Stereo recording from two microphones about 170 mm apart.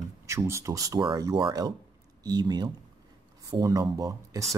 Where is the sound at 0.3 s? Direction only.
15° right (ahead or behind).